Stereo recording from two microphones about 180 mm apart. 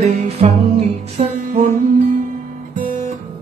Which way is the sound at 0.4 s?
35° right (ahead or behind).